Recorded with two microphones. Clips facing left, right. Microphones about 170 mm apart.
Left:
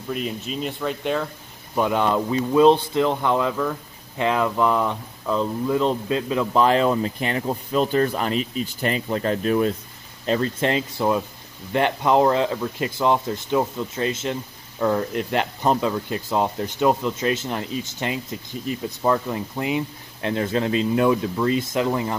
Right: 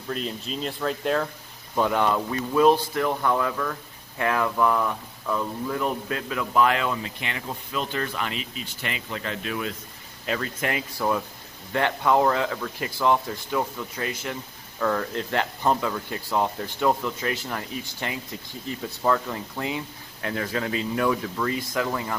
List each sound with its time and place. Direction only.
0.1 s speech: 5° left (ahead or behind)
1.8 s speech: 15° left (ahead or behind)